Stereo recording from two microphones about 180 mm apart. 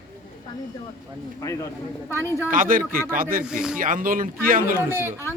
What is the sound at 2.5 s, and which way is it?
Speech, 50° right (ahead or behind).